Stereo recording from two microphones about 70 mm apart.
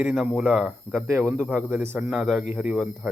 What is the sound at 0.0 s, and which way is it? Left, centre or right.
Speech, centre.